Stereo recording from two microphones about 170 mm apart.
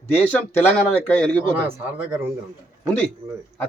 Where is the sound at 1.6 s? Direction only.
10° right (ahead or behind).